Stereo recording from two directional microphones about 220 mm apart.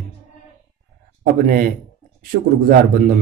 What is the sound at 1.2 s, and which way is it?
Speech, 40° right (ahead or behind).